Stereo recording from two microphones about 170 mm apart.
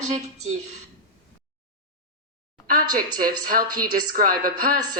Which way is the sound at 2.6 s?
55° right (ahead or behind).